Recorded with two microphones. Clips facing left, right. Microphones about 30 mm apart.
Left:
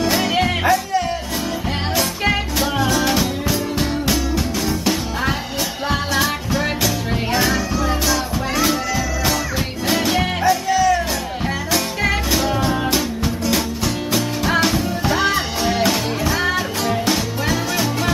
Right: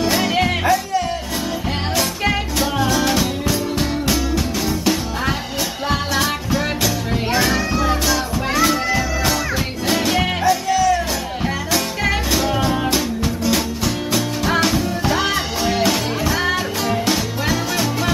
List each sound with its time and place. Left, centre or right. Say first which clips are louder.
0.0 s music: even; centre
7.5 s music: right 2 dB; centre
8.1 s music: right 1 dB; centre
9.8 s music: even; centre